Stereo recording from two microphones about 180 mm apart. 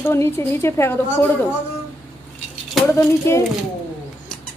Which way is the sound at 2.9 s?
15° left (ahead or behind).